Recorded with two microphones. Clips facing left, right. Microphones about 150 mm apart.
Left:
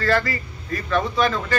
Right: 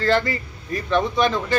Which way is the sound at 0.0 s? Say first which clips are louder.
Right 1 dB; 25° right (ahead or behind).